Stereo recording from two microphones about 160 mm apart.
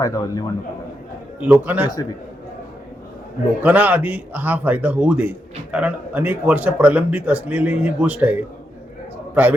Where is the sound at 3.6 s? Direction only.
10° right (ahead or behind).